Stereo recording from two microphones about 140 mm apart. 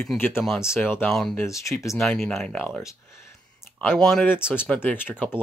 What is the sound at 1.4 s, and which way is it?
Speech, 20° left (ahead or behind).